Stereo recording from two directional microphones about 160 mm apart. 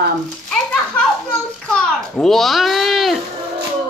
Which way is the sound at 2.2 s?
Centre (ahead or behind).